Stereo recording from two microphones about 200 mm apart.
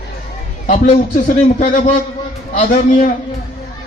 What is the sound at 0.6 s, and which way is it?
A man's voice, 40° left (ahead or behind).